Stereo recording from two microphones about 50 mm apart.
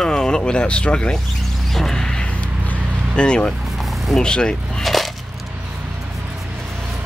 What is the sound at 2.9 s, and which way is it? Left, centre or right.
Vehicle, right.